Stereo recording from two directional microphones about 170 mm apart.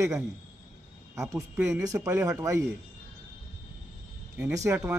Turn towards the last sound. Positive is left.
turn(degrees=-15)  # may be behind; listen again after turning